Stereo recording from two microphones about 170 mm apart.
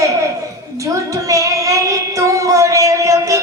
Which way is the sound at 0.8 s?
20° right (ahead or behind).